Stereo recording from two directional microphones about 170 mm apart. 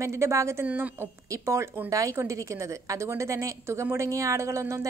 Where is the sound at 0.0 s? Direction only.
15° right (ahead or behind).